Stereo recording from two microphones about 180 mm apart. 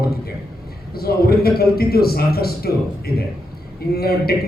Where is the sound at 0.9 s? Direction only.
60° left (ahead or behind).